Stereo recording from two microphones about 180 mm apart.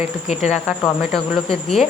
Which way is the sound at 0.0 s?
40° left (ahead or behind).